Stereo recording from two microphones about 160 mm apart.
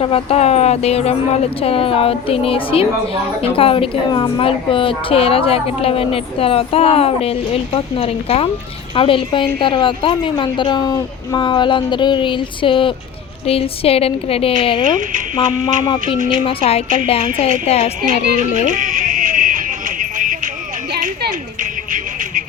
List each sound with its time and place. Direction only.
0.0 s a woman's voice: 35° left (ahead or behind)
16.1 s a woman's voice: 55° right (ahead or behind)
16.4 s a woman's voice: 35° left (ahead or behind)
18.7 s a sound: 55° right (ahead or behind)